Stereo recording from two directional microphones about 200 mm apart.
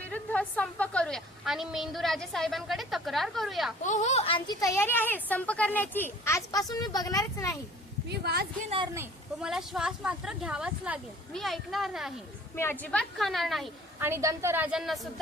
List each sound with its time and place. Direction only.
0.1 s a woman's voice: 5° left (ahead or behind)
3.8 s a woman's voice: 35° left (ahead or behind); by 7.5 s 15° left (ahead or behind)
8.1 s speech: 55° right (ahead or behind)
9.0 s a woman's voice: 5° right (ahead or behind)
12.5 s a woman's voice: 10° left (ahead or behind)
14.0 s a woman's voice: 15° right (ahead or behind)